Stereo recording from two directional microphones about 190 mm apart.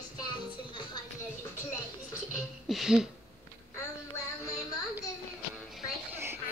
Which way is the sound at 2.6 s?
Centre (ahead or behind).